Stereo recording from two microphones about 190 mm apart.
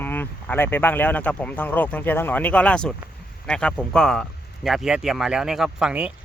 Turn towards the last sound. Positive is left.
turn(degrees=-5)  # may be behind; listen again after turning